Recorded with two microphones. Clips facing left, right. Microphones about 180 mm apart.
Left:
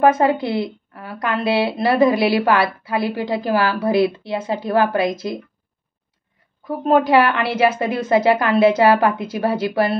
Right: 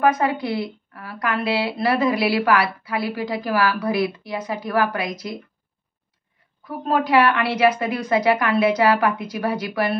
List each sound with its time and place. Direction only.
0.0 s a woman's voice: 25° left (ahead or behind)
6.9 s a woman's voice: 25° left (ahead or behind)